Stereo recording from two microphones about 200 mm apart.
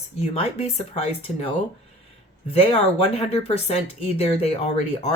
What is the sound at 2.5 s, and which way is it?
Speech, 30° left (ahead or behind).